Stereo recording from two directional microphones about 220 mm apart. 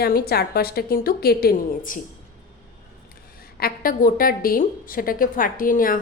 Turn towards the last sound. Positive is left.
turn(degrees=40)  # may be behind; listen again after turning